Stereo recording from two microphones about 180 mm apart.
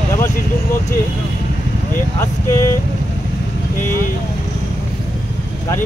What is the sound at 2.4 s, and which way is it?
Speech, 15° left (ahead or behind).